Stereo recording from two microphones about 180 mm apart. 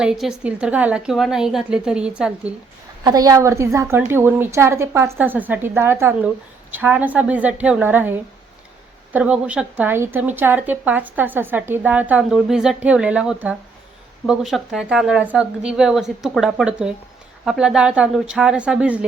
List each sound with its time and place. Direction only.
0.0 s speech: 5° right (ahead or behind)
3.0 s a woman's voice: 20° right (ahead or behind)